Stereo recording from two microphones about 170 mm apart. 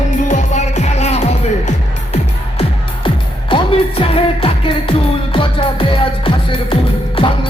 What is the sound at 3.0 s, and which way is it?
Music, 30° left (ahead or behind).